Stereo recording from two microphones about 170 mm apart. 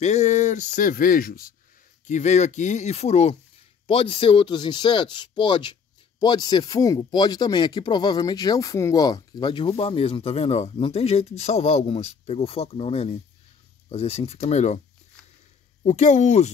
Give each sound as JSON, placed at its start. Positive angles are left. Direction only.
{"t": 0.0, "sound": "speech", "side_deg": 45}
{"t": 2.0, "sound": "speech", "side_deg": 45}
{"t": 15.8, "sound": "speech", "side_deg": 45}